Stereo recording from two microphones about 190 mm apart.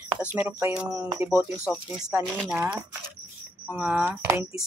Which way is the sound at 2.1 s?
5° right (ahead or behind).